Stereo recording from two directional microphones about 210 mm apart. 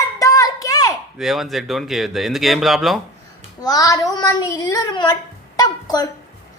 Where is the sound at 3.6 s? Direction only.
20° left (ahead or behind).